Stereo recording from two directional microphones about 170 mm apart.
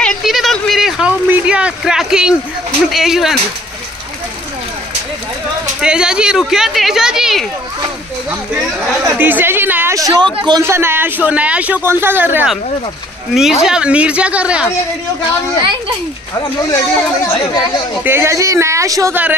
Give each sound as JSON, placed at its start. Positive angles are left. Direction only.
{"t": 0.0, "sound": "a sound", "side_deg": 0}
{"t": 2.9, "sound": "speech", "side_deg": 0}
{"t": 5.8, "sound": "speech", "side_deg": -5}
{"t": 10.6, "sound": "speech", "side_deg": -15}
{"t": 18.0, "sound": "speech", "side_deg": -15}